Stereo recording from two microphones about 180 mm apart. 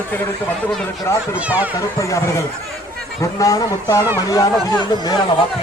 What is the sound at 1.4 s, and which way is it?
Speech, 10° right (ahead or behind).